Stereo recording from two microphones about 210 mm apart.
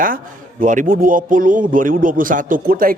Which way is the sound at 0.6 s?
40° right (ahead or behind).